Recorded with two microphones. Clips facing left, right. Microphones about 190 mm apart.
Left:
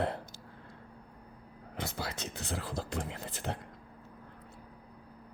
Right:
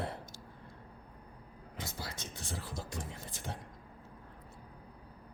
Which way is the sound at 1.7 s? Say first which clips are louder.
Left 6 dB; 65° left (ahead or behind).